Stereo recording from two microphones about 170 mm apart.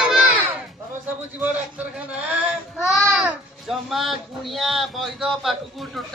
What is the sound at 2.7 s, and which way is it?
Speech, centre (ahead or behind).